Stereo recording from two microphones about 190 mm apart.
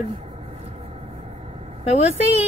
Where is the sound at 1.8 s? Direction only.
35° left (ahead or behind).